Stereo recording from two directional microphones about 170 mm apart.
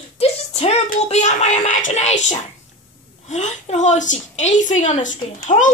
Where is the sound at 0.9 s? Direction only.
40° left (ahead or behind).